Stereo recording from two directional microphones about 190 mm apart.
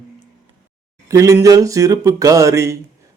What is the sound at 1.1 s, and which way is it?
Speech, 15° right (ahead or behind).